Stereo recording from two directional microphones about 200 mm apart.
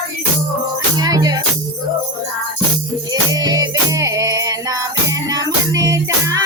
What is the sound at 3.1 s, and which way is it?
Music, 20° right (ahead or behind).